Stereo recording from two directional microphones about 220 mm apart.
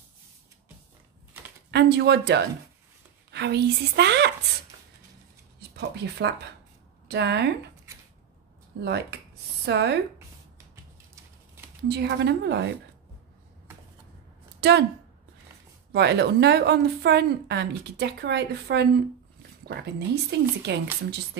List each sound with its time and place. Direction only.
1.7 s a woman's voice: 50° right (ahead or behind)
5.6 s a sound: 50° right (ahead or behind)
7.1 s a woman's voice: 50° right (ahead or behind)
8.8 s a woman's voice: 50° right (ahead or behind)
11.9 s a woman's voice: 50° right (ahead or behind)
14.6 s speech: 50° right (ahead or behind)
15.9 s a woman's voice: 50° right (ahead or behind)